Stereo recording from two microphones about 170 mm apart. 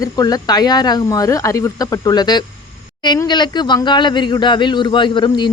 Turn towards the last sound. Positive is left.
turn(degrees=25)  # may be behind; listen again after turning